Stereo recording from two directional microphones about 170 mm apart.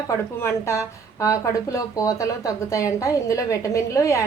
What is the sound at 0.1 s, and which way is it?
A woman's voice, 15° left (ahead or behind).